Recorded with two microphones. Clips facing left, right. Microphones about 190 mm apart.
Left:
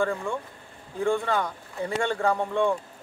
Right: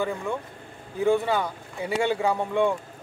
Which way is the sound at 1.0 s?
5° right (ahead or behind).